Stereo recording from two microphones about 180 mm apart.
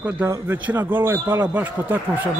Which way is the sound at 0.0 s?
10° right (ahead or behind).